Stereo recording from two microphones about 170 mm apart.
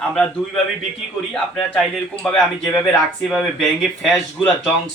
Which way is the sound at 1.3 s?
5° left (ahead or behind).